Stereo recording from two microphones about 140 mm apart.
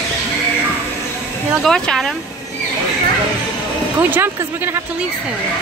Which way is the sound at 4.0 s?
15° right (ahead or behind).